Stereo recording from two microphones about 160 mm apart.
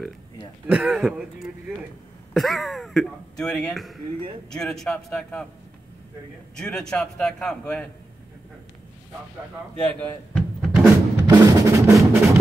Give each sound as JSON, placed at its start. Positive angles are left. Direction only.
{"t": 0.7, "sound": "speech", "side_deg": -5}
{"t": 6.6, "sound": "speech", "side_deg": 5}
{"t": 9.9, "sound": "cupboard open or close", "side_deg": 5}
{"t": 11.2, "sound": "drum", "side_deg": -20}